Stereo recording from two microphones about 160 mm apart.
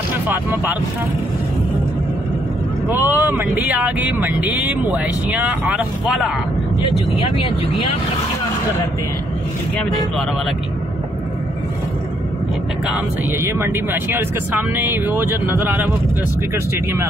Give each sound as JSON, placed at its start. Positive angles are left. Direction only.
{"t": 0.3, "sound": "speech", "side_deg": -10}
{"t": 2.9, "sound": "speech", "side_deg": -10}
{"t": 6.8, "sound": "speech", "side_deg": 40}
{"t": 12.8, "sound": "speech", "side_deg": -10}